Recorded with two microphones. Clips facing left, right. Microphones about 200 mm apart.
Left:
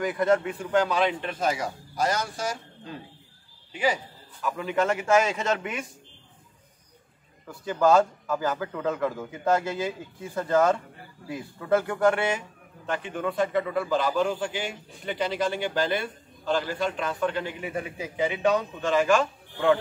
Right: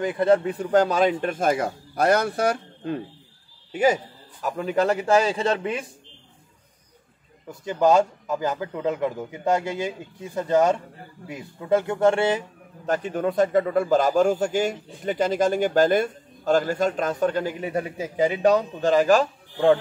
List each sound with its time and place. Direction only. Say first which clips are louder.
0.0 s speech: right 4 dB; 30° right (ahead or behind); by 3.0 s 60° right (ahead or behind)
3.7 s a man's voice: right 6 dB; 45° right (ahead or behind)
7.4 s a man's voice: right 2 dB; 20° right (ahead or behind); by 19.8 s 35° right (ahead or behind)